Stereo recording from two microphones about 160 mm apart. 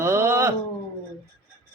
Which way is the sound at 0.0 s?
15° right (ahead or behind).